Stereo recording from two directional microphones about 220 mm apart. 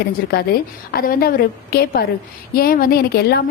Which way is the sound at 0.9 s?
40° left (ahead or behind).